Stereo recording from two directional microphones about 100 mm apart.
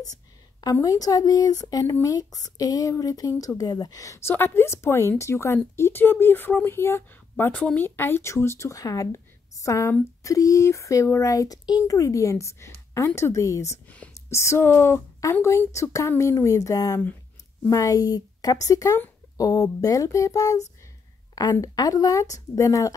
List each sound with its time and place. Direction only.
0.8 s a woman's voice: 35° left (ahead or behind)
13.8 s whispering: 15° left (ahead or behind)
14.3 s a woman's voice: 30° left (ahead or behind)